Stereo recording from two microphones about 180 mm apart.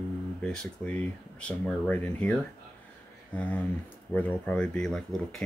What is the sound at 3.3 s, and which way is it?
Speech, 10° left (ahead or behind).